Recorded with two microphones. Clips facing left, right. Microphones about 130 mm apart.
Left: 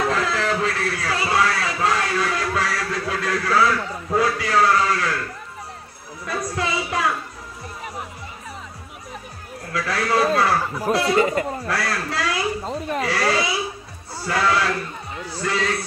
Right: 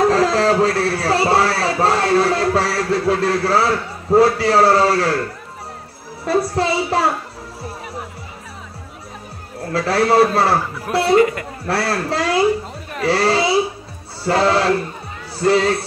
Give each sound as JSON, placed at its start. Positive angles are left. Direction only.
{"t": 0.0, "sound": "a sound", "side_deg": -35}
{"t": 6.2, "sound": "music", "side_deg": -35}
{"t": 9.6, "sound": "a man's voice", "side_deg": -30}
{"t": 11.1, "sound": "speech", "side_deg": 30}
{"t": 11.6, "sound": "a man's voice", "side_deg": -30}